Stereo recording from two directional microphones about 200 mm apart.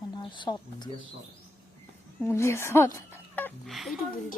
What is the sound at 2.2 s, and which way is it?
Speech, 15° left (ahead or behind).